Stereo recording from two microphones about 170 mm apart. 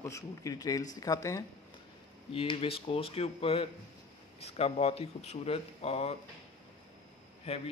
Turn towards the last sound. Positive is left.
turn(degrees=35)  # may be behind; listen again after turning